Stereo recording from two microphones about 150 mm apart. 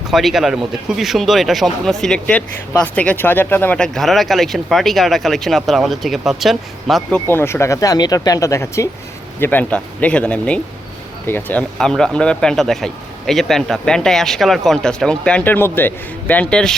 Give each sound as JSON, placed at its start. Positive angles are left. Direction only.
{"t": 0.1, "sound": "speech", "side_deg": 0}
{"t": 7.3, "sound": "speech", "side_deg": 15}